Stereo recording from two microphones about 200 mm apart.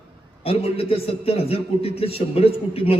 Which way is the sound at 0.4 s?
30° left (ahead or behind).